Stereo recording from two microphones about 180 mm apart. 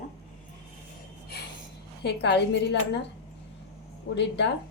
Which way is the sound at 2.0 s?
70° left (ahead or behind).